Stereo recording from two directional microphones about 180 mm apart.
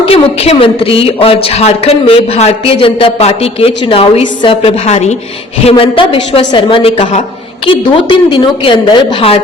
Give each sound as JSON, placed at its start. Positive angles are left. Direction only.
{"t": 0.0, "sound": "a man's voice", "side_deg": 35}
{"t": 7.7, "sound": "a woman's voice", "side_deg": 30}